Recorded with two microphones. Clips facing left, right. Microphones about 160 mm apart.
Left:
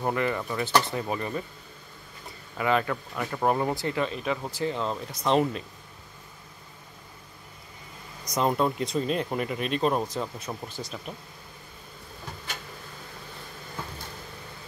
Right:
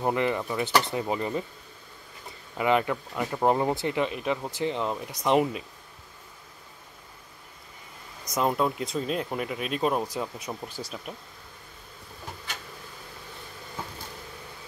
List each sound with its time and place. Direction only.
0.0 s speech: 20° right (ahead or behind)
2.5 s speech: 20° right (ahead or behind)
8.3 s speech: 5° right (ahead or behind)